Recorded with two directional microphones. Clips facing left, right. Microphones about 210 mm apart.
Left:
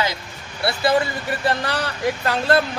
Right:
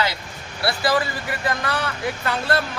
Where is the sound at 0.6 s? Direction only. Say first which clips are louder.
Left 2 dB; 25° left (ahead or behind).